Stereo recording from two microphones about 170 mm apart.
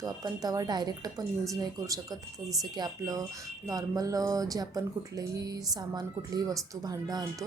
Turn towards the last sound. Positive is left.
turn(degrees=-20)  # may be behind; listen again after turning